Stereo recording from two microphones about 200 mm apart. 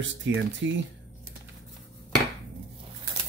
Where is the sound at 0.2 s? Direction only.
70° right (ahead or behind).